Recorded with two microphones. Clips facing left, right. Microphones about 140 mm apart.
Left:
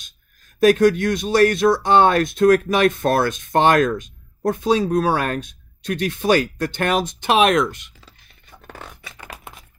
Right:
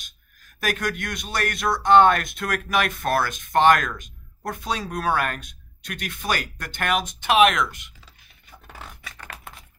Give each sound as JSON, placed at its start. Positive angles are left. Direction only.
{"t": 0.6, "sound": "speech", "side_deg": 25}
{"t": 8.7, "sound": "a sound", "side_deg": 0}
{"t": 9.1, "sound": "typing", "side_deg": 15}